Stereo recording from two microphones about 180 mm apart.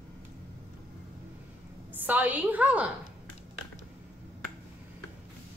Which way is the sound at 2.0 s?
10° right (ahead or behind).